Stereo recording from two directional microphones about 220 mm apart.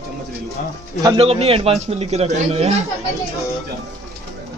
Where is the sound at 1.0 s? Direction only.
20° right (ahead or behind).